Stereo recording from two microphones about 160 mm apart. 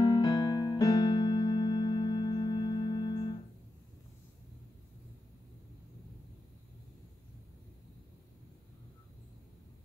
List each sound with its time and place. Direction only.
0.0 s music: 25° left (ahead or behind)